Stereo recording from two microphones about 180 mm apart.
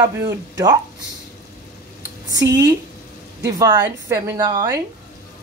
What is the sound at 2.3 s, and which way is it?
A woman's voice, 20° right (ahead or behind).